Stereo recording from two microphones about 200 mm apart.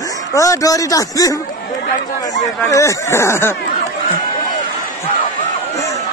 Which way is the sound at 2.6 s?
15° left (ahead or behind).